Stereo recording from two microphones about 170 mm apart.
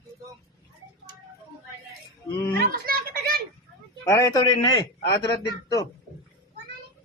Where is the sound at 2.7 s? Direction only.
55° right (ahead or behind).